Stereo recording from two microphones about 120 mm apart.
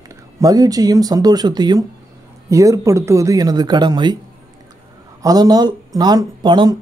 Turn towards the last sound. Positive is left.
turn(degrees=-40)  # may be behind; listen again after turning